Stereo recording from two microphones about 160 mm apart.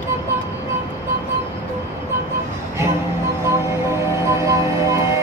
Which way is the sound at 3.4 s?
15° right (ahead or behind).